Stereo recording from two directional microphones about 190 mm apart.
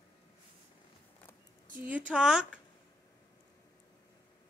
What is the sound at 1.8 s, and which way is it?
Speech, 5° right (ahead or behind).